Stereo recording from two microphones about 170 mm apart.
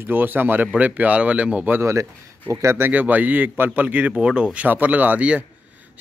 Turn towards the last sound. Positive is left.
turn(degrees=-10)  # may be behind; listen again after turning